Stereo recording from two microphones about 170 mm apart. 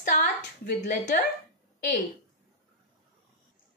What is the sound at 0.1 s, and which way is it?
A woman's voice, 55° left (ahead or behind).